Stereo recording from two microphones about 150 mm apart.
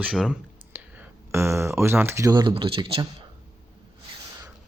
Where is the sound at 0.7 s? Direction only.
15° right (ahead or behind).